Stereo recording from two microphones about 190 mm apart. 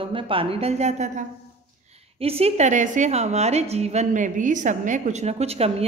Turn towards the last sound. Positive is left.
turn(degrees=-30)  # may be behind; listen again after turning